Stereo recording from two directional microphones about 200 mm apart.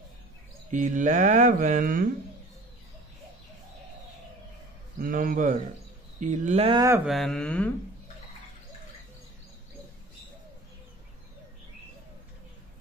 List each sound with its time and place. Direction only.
0.7 s speech: 40° right (ahead or behind)
5.0 s speech: 40° right (ahead or behind)
7.1 s speech: centre (ahead or behind)